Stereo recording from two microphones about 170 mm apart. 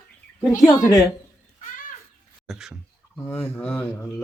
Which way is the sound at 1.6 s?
50° left (ahead or behind).